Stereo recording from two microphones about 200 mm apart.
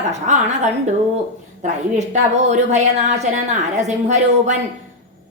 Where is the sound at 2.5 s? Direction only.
35° right (ahead or behind).